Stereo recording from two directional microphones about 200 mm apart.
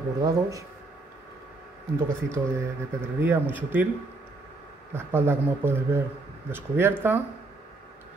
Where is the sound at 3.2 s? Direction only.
10° right (ahead or behind).